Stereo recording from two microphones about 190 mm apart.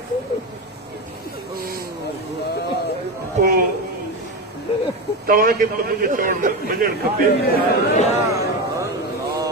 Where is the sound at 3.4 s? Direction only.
50° right (ahead or behind).